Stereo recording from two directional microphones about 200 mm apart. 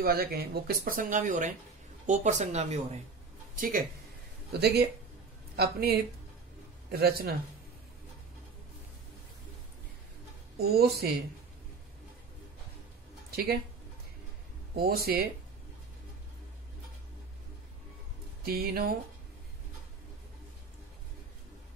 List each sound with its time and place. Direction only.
0.0 s speech: 50° right (ahead or behind); by 3.0 s 35° right (ahead or behind)
3.5 s speech: 45° right (ahead or behind)
10.6 s speech: 50° right (ahead or behind)
13.3 s speech: 50° right (ahead or behind)
14.8 s speech: 50° right (ahead or behind)
18.4 s speech: 50° right (ahead or behind)